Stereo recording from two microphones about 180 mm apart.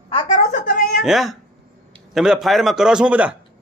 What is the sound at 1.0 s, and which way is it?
A man's voice, centre (ahead or behind).